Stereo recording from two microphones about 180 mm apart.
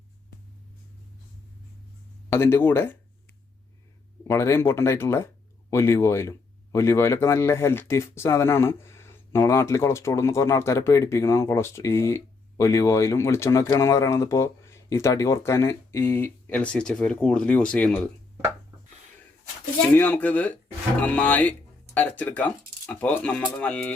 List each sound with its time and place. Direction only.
2.3 s speech: 15° left (ahead or behind)
4.2 s speech: 15° left (ahead or behind)
19.9 s speech: 10° left (ahead or behind)